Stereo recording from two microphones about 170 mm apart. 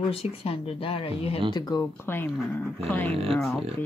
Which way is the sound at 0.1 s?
35° left (ahead or behind).